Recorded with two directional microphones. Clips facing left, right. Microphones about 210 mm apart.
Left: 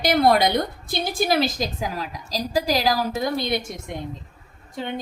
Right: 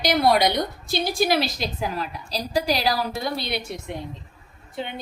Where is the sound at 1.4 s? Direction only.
45° left (ahead or behind).